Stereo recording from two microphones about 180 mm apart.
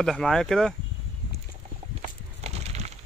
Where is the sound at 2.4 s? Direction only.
35° right (ahead or behind).